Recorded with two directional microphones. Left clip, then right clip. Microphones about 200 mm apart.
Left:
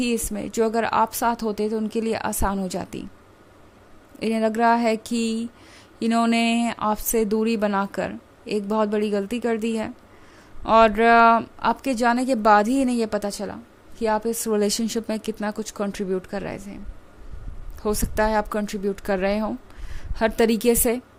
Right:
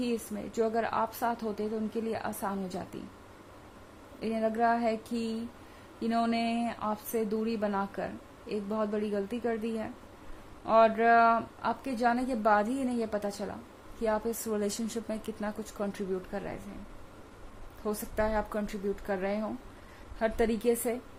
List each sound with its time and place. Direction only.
0.0 s a woman's voice: 50° left (ahead or behind)
4.2 s a woman's voice: 50° left (ahead or behind)
17.8 s a woman's voice: 50° left (ahead or behind)